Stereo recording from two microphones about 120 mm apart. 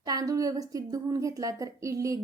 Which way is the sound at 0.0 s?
30° right (ahead or behind).